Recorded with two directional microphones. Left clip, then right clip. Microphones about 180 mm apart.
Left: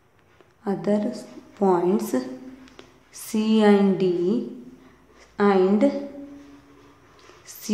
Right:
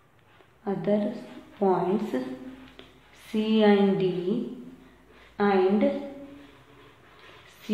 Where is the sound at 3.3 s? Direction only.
35° left (ahead or behind).